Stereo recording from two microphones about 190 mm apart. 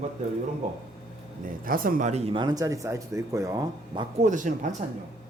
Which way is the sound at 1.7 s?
50° right (ahead or behind).